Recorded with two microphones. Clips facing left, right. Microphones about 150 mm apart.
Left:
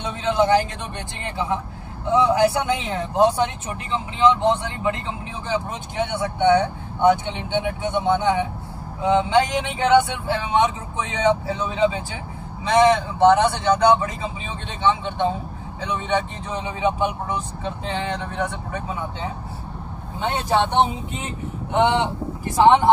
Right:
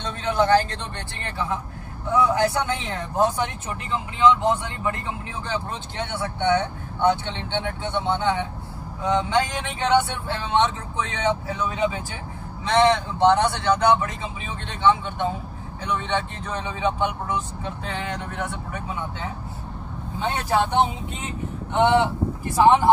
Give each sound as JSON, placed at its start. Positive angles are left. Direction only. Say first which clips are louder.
{"t": 0.2, "sound": "a man's voice", "louder": "left 1 dB", "side_deg": 20}